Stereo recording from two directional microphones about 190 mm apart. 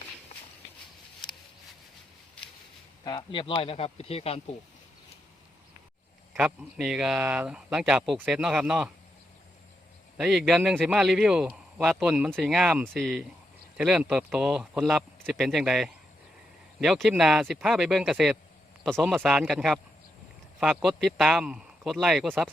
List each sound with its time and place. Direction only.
3.0 s speech: 25° left (ahead or behind)
6.3 s a man's voice: 5° right (ahead or behind)
10.2 s a man's voice: centre (ahead or behind)